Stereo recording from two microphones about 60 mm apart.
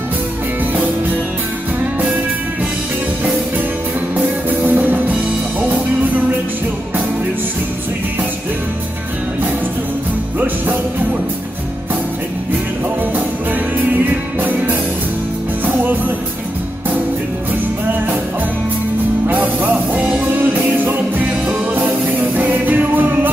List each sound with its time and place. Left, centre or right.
4.5 s music: right
15.6 s music: right
19.2 s music: right